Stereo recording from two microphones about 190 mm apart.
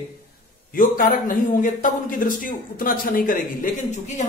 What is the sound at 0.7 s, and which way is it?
A man's voice, 45° left (ahead or behind).